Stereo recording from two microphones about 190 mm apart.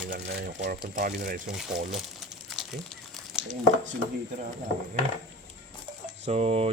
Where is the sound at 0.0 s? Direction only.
50° right (ahead or behind).